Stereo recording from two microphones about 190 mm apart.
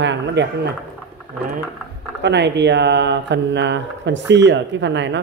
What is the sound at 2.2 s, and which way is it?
Speech, 65° right (ahead or behind).